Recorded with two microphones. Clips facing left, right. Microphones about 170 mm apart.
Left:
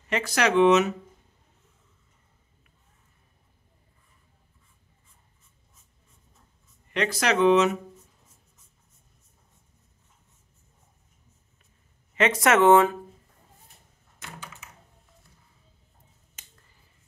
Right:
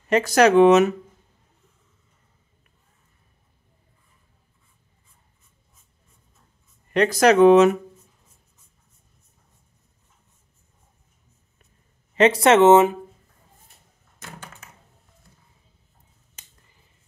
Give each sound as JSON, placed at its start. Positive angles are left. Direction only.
{"t": 0.1, "sound": "speech", "side_deg": -40}
{"t": 6.9, "sound": "speech", "side_deg": -45}
{"t": 12.2, "sound": "speech", "side_deg": -30}